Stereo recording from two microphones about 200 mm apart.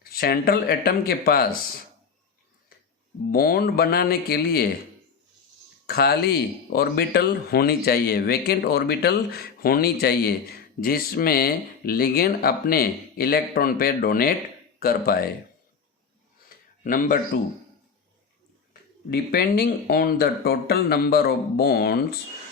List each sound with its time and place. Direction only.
0.1 s speech: 50° left (ahead or behind)
3.3 s speech: 45° left (ahead or behind)
5.8 s speech: 50° left (ahead or behind)
16.8 s speech: 45° left (ahead or behind)
18.7 s speech: 50° left (ahead or behind)